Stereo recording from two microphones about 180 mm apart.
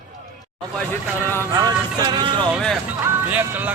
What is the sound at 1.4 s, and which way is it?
Music, 20° right (ahead or behind).